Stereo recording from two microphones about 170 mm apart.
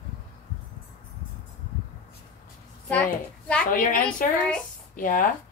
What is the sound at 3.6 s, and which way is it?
A woman's voice, 55° left (ahead or behind).